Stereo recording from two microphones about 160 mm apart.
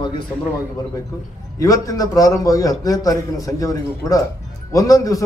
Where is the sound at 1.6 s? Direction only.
20° left (ahead or behind).